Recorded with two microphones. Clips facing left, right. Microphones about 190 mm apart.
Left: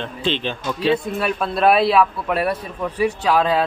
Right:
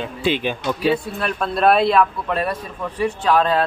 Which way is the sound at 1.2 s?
Centre (ahead or behind).